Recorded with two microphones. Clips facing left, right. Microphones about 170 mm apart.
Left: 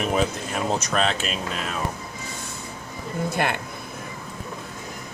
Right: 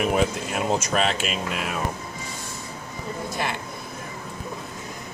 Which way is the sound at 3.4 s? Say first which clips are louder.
Left 4 dB; 60° left (ahead or behind).